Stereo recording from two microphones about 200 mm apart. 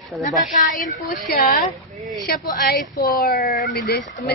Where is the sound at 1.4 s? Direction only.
45° left (ahead or behind).